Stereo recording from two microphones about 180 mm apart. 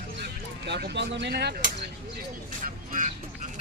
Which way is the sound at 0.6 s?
70° right (ahead or behind).